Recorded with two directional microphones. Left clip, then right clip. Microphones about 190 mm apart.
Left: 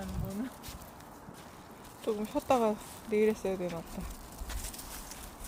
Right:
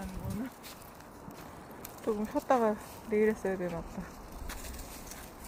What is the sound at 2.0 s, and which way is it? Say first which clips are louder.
Speech: even; 5° left (ahead or behind).